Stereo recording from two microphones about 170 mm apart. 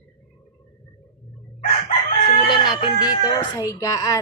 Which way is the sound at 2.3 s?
30° left (ahead or behind).